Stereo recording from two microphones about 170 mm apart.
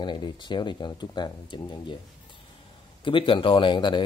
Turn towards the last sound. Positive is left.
turn(degrees=25)  # may be behind; listen again after turning